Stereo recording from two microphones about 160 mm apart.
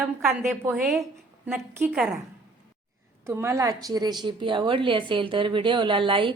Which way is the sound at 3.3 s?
15° right (ahead or behind).